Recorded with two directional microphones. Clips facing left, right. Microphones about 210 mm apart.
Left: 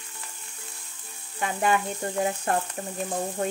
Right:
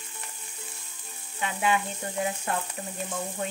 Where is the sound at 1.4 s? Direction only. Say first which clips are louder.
Left 2 dB; 45° left (ahead or behind).